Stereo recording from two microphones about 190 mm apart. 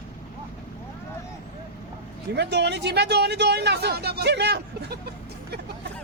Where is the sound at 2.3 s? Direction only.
65° right (ahead or behind).